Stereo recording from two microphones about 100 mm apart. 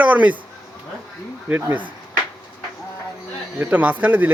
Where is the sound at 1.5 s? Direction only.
20° right (ahead or behind).